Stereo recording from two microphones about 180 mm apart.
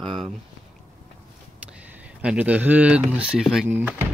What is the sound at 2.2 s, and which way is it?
Speech, 5° right (ahead or behind).